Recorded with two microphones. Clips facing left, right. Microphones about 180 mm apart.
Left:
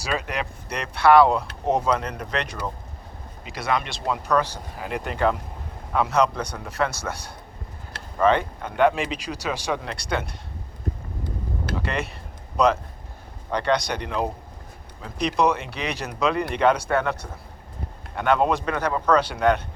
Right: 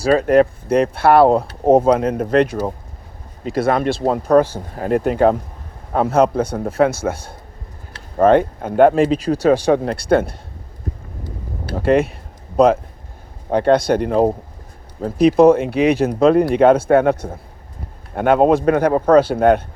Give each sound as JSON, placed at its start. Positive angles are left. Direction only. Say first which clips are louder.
{"t": 0.2, "sound": "speech", "louder": "right 17 dB", "side_deg": -50}
{"t": 11.9, "sound": "speech", "louder": "right 14 dB", "side_deg": -50}
{"t": 15.4, "sound": "speech", "louder": "right 10 dB", "side_deg": -50}